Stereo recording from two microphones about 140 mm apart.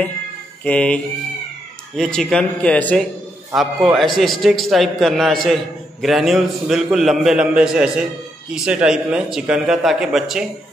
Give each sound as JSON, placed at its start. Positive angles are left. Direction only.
{"t": 0.7, "sound": "music", "side_deg": 10}
{"t": 2.0, "sound": "a man's voice", "side_deg": 5}
{"t": 3.5, "sound": "a man's voice", "side_deg": 0}